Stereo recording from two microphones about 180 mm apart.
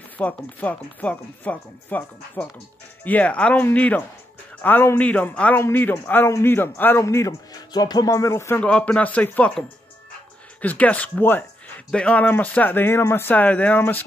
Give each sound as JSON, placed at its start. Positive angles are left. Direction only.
{"t": 0.2, "sound": "a man's voice", "side_deg": 10}